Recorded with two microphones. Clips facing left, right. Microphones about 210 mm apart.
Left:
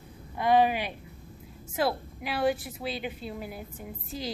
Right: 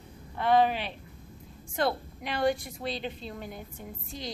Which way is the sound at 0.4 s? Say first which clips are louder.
Left 1 dB; 10° left (ahead or behind).